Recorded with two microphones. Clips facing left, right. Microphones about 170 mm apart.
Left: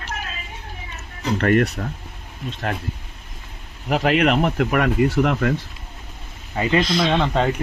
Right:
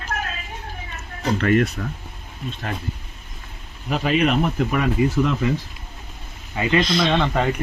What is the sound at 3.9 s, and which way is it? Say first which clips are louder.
Speech: left 2 dB; 70° left (ahead or behind).